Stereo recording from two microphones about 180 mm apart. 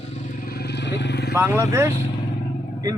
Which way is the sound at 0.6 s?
70° left (ahead or behind).